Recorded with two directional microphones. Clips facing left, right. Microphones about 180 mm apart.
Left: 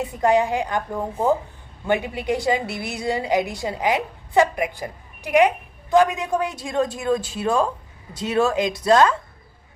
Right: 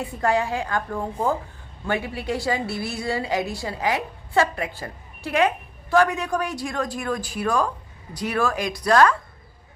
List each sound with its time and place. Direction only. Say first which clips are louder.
0.0 s a woman's voice: left 4 dB; 20° left (ahead or behind)